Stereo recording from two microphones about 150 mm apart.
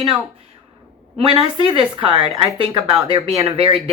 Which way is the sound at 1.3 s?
35° right (ahead or behind).